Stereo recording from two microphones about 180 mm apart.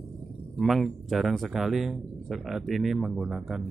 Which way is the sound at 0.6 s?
Centre (ahead or behind).